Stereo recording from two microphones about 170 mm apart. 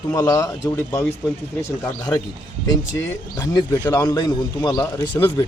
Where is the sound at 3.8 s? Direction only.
10° left (ahead or behind).